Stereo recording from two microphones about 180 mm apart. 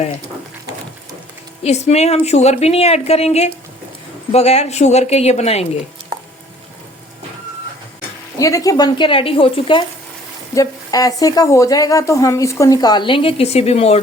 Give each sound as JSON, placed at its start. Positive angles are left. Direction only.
{"t": 1.6, "sound": "a woman's voice", "side_deg": 35}
{"t": 8.4, "sound": "speech", "side_deg": 20}